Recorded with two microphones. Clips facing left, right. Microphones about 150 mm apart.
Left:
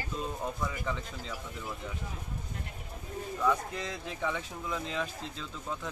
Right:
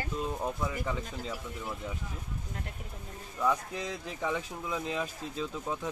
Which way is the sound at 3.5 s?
10° right (ahead or behind).